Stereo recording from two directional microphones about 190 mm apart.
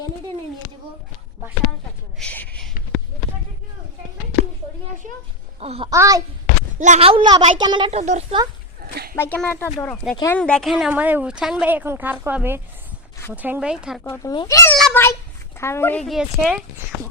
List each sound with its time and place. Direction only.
2.1 s a sound: 5° left (ahead or behind)
5.5 s a child's voice: 30° right (ahead or behind)
5.9 s a woman's voice: 15° right (ahead or behind)
6.7 s a woman's voice: 40° right (ahead or behind)
9.1 s a woman's voice: 10° left (ahead or behind)
14.0 s speech: 15° left (ahead or behind)
14.8 s a sound: 5° left (ahead or behind)
15.5 s speech: 15° left (ahead or behind); by 16.6 s centre (ahead or behind)